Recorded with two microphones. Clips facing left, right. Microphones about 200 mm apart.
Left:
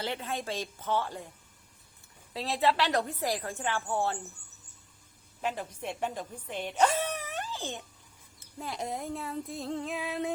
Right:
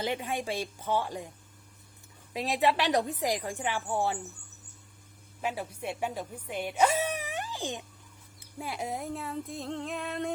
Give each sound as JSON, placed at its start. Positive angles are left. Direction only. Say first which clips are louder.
{"t": 0.0, "sound": "a woman's voice", "louder": "right 3 dB", "side_deg": -15}
{"t": 2.3, "sound": "a woman's voice", "louder": "right 1 dB", "side_deg": -15}
{"t": 5.4, "sound": "speech", "louder": "even", "side_deg": -10}
{"t": 8.4, "sound": "music", "louder": "right 1 dB", "side_deg": -10}